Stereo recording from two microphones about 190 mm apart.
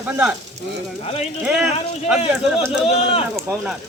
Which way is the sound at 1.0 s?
35° left (ahead or behind).